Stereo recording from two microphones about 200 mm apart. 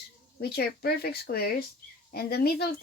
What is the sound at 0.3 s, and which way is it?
Speech, 55° left (ahead or behind).